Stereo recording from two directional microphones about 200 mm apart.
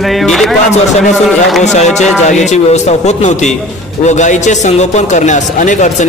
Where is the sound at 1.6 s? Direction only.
35° left (ahead or behind).